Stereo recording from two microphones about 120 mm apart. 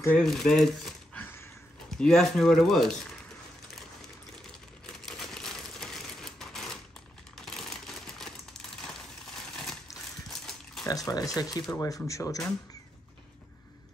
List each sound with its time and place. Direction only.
0.2 s speech: 5° left (ahead or behind)
1.1 s a sound: 20° left (ahead or behind)
1.9 s speech: 5° left (ahead or behind)
5.0 s typewriter: 5° left (ahead or behind)
7.3 s crumpling: 5° left (ahead or behind)
10.2 s pig: 5° left (ahead or behind)
10.9 s speech: 30° left (ahead or behind)